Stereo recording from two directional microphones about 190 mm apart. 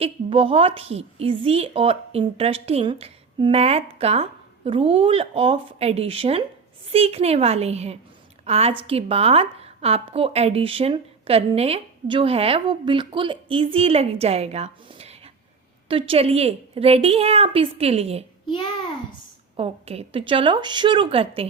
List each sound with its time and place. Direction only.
0.0 s a woman's voice: 30° right (ahead or behind)
18.4 s a child's voice: 25° left (ahead or behind)
19.5 s a woman's voice: 30° right (ahead or behind)